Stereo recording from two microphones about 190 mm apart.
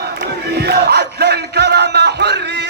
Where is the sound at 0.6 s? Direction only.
55° right (ahead or behind).